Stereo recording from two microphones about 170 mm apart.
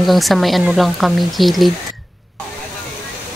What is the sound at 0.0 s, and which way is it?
Speech, centre (ahead or behind).